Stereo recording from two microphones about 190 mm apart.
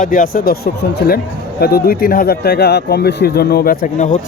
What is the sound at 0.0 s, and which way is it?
Speech, 45° left (ahead or behind).